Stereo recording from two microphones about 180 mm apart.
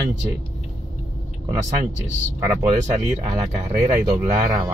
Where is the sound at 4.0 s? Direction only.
15° right (ahead or behind).